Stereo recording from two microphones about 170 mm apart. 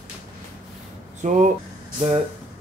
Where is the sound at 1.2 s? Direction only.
45° right (ahead or behind).